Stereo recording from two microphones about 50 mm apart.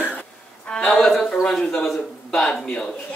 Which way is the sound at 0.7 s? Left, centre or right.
Centre.